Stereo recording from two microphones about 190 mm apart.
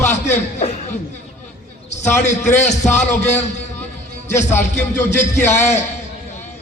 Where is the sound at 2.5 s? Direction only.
40° left (ahead or behind).